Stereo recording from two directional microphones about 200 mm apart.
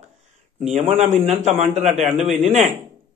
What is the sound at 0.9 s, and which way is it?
A man's voice, 30° right (ahead or behind).